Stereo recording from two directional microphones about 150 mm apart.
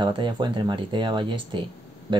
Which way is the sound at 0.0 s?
30° right (ahead or behind).